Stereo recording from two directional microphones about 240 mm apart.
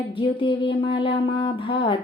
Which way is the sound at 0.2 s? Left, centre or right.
Left.